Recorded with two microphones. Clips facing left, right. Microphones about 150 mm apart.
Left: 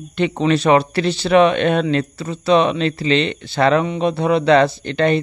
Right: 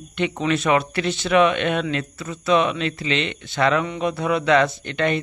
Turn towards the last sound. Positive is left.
turn(degrees=30)  # may be behind; listen again after turning